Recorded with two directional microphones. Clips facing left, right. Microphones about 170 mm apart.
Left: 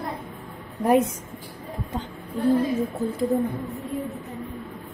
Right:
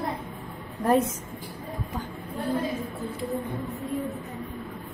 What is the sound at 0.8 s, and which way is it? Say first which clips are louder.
Speech: left 3 dB; 15° left (ahead or behind).